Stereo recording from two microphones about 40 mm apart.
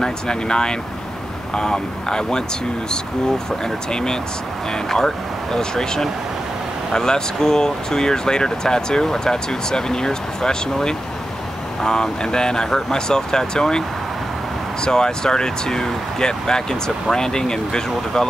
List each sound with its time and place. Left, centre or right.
0.0 s speech: centre
3.9 s speech: centre
14.9 s speech: centre